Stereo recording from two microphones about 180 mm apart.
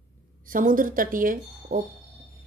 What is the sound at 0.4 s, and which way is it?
Speech, 50° right (ahead or behind).